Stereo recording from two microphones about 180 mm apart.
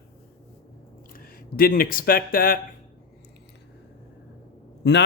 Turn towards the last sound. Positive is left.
turn(degrees=70)  # may be behind; listen again after turning